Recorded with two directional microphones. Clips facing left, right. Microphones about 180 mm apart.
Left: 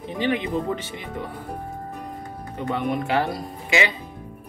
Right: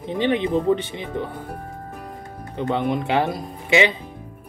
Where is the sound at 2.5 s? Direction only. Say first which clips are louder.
Right 3 dB; 25° right (ahead or behind).